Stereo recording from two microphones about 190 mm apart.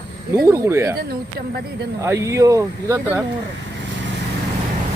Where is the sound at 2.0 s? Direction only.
15° right (ahead or behind).